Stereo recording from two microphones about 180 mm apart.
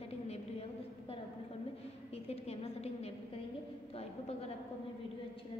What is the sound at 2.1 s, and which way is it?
A woman's voice, 35° left (ahead or behind).